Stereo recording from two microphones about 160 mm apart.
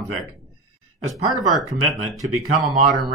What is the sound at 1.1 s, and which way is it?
Speech, centre (ahead or behind).